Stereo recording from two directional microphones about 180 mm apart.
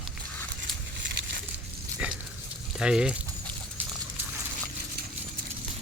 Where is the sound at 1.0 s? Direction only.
75° right (ahead or behind).